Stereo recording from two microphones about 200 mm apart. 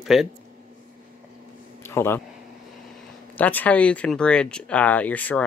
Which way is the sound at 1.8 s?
10° left (ahead or behind).